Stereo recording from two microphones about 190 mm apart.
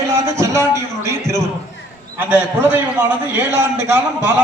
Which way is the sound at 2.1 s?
10° right (ahead or behind).